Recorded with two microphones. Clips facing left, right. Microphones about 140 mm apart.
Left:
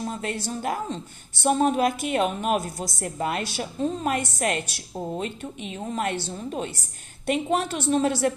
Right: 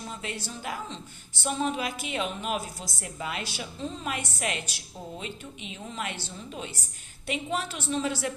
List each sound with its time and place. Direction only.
0.0 s a woman's voice: 45° left (ahead or behind)